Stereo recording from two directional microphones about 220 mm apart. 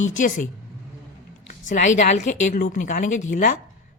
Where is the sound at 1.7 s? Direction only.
35° left (ahead or behind).